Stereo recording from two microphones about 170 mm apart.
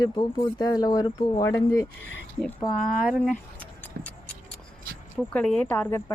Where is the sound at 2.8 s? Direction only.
55° left (ahead or behind).